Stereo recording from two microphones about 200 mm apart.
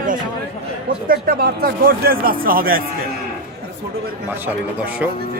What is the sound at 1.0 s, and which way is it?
Speech, 50° right (ahead or behind).